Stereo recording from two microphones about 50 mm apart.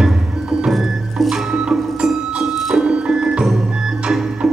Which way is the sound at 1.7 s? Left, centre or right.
Centre.